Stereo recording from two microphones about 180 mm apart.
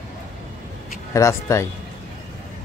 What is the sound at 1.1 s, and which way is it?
Speech, 15° left (ahead or behind).